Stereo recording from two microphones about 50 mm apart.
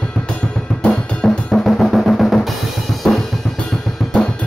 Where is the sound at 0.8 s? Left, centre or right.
Centre.